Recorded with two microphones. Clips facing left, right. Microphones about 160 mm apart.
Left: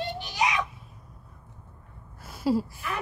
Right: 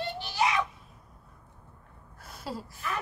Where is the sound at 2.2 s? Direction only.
5° left (ahead or behind).